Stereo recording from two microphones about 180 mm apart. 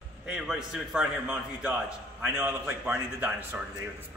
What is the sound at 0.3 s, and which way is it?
Speech, 5° right (ahead or behind).